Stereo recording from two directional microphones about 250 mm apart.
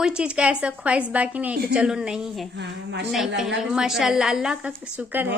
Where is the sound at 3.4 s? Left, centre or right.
Centre.